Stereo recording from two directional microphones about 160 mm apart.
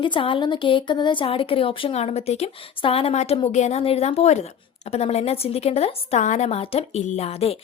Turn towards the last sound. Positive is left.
turn(degrees=40)  # may be behind; listen again after turning